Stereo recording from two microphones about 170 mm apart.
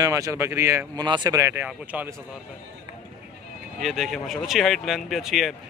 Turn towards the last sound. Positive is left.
turn(degrees=0)  # may be behind; listen again after turning